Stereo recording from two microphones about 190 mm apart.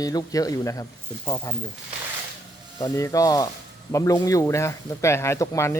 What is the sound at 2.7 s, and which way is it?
Speech, 20° left (ahead or behind).